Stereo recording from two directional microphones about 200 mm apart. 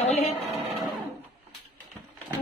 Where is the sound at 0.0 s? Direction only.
35° left (ahead or behind).